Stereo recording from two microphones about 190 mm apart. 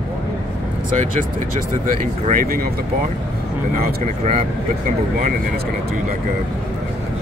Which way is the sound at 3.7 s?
40° right (ahead or behind).